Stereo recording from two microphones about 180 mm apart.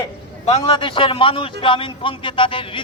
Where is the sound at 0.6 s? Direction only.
25° left (ahead or behind).